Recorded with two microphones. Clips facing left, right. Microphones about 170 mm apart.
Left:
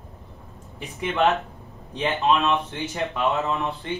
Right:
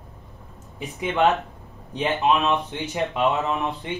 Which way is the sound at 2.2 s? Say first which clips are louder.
Even; 15° right (ahead or behind).